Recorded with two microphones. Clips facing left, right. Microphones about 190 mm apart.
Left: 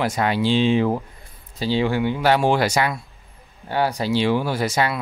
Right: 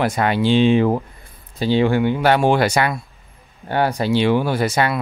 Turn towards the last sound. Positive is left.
turn(degrees=-60)  # may be behind; listen again after turning